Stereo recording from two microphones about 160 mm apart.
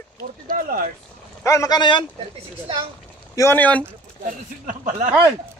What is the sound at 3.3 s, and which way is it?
Speech, 15° left (ahead or behind).